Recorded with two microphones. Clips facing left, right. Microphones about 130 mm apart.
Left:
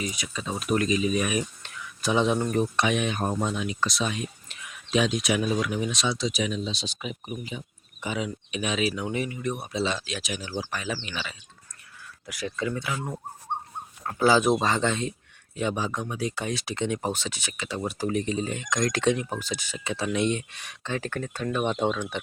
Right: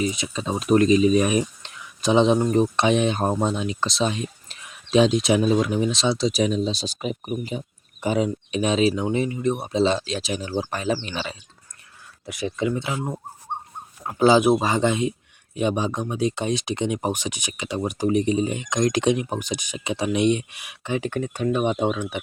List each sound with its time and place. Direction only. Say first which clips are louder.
0.0 s speech: right 7 dB; 25° right (ahead or behind)
12.2 s speech: right 5 dB; 25° right (ahead or behind)